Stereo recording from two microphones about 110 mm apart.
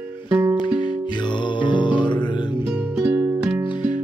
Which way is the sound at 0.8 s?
45° left (ahead or behind).